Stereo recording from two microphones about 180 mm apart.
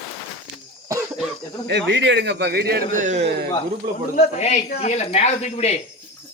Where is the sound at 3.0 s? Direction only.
40° right (ahead or behind).